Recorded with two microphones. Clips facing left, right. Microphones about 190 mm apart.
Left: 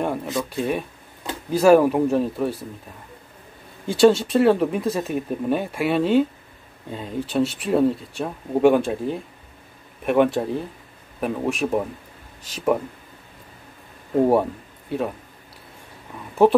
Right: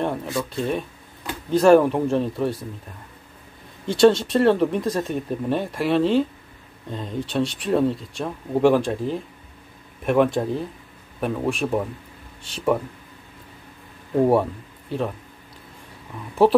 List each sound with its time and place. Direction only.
0.3 s speech: 20° left (ahead or behind); by 2.5 s centre (ahead or behind)
3.8 s speech: centre (ahead or behind)
14.2 s speech: centre (ahead or behind)